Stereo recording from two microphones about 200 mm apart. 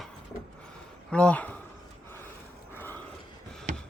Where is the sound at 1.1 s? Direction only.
5° left (ahead or behind).